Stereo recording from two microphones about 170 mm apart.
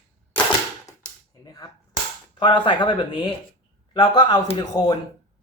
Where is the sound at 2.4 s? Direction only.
30° left (ahead or behind).